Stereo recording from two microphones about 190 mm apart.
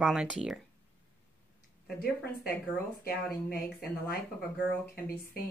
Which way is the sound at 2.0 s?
50° left (ahead or behind).